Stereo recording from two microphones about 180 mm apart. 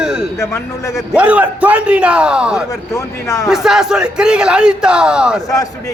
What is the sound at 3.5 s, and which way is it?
Speech, 5° right (ahead or behind).